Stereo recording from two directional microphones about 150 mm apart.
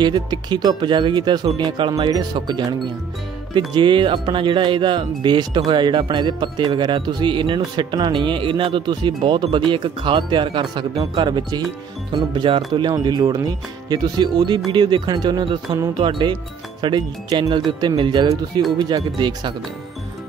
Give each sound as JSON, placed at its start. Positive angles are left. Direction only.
{"t": 0.0, "sound": "speech", "side_deg": -30}